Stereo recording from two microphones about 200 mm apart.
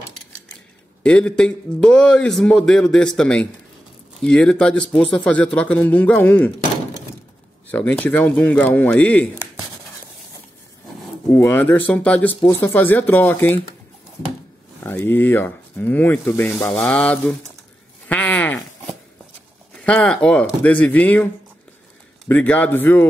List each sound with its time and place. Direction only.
1.0 s a man's voice: 5° left (ahead or behind)
7.7 s speech: 5° left (ahead or behind)
11.3 s speech: 10° left (ahead or behind)
14.8 s speech: 10° left (ahead or behind)
18.0 s a sound: 10° left (ahead or behind)
19.8 s speech: 5° left (ahead or behind)
22.3 s speech: 10° left (ahead or behind)